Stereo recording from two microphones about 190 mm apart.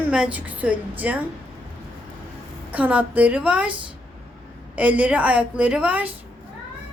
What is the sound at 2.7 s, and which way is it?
A woman's voice, 10° right (ahead or behind).